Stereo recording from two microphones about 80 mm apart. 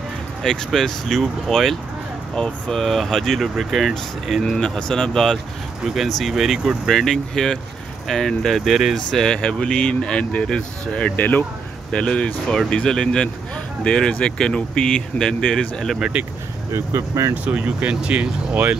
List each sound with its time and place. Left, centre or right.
0.4 s speech: centre
11.1 s speech: left; by 16.0 s centre
16.0 s speech: centre
16.7 s speech: right
17.3 s speech: centre